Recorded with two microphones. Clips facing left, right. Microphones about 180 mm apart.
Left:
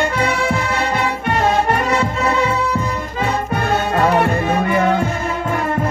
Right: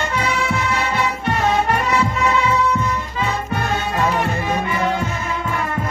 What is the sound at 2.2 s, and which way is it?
Music, 30° left (ahead or behind).